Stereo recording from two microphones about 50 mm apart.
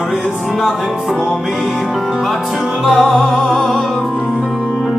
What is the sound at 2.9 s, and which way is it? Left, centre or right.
Music, centre.